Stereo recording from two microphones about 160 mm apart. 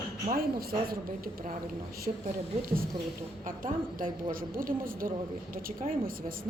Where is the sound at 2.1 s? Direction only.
40° right (ahead or behind).